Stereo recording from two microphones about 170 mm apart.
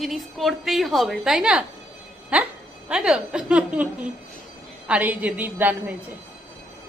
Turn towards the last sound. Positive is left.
turn(degrees=-10)  # may be behind; listen again after turning